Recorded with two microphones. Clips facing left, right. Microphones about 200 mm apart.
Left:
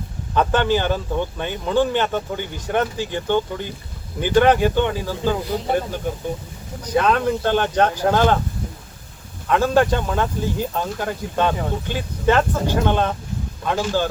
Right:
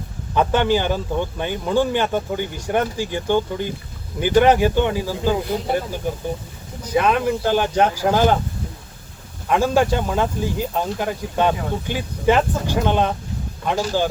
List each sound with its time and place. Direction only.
0.3 s speech: 10° right (ahead or behind)
9.5 s speech: 10° right (ahead or behind)